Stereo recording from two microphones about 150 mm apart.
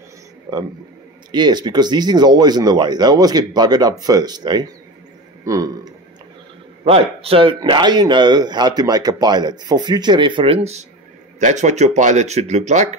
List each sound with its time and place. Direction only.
1.3 s a man's voice: 30° right (ahead or behind)
6.8 s speech: 40° right (ahead or behind)